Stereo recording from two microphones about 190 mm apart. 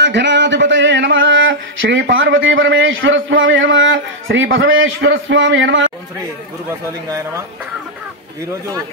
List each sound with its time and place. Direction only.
0.0 s speech: 70° right (ahead or behind)